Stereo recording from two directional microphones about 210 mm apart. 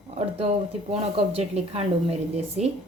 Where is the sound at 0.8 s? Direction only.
30° right (ahead or behind).